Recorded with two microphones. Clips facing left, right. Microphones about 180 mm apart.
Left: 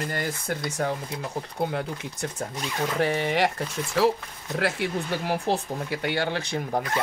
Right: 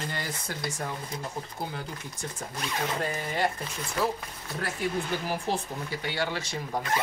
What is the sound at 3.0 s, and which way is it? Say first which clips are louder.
Speech: left 9 dB; 80° left.